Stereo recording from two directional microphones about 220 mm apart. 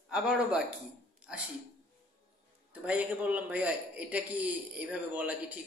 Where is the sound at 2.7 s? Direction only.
5° right (ahead or behind).